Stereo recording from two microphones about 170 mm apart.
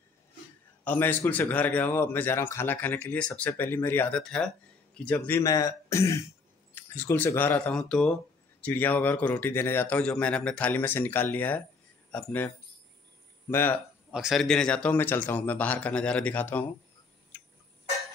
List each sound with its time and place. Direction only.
0.8 s speech: 10° left (ahead or behind)
14.1 s speech: centre (ahead or behind)